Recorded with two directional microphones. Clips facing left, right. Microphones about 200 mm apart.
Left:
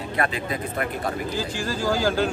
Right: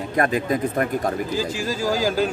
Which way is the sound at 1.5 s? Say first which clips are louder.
Right 1 dB; 10° right (ahead or behind).